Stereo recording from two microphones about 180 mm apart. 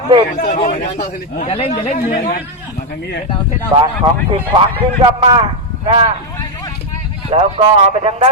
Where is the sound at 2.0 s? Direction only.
55° left (ahead or behind).